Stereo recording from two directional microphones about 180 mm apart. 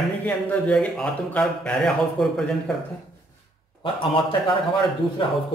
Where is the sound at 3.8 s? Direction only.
30° left (ahead or behind).